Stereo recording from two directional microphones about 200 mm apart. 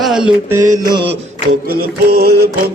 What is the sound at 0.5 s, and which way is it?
Mantra, 15° right (ahead or behind).